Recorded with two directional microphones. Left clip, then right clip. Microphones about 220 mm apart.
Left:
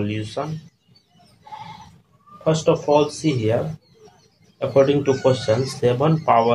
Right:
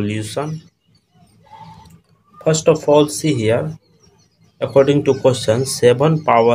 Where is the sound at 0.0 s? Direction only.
45° right (ahead or behind).